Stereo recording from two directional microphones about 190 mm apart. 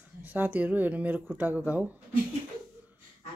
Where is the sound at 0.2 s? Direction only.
10° right (ahead or behind).